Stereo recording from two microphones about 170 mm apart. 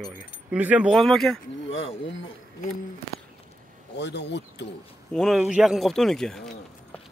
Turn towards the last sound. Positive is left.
turn(degrees=5)  # may be behind; listen again after turning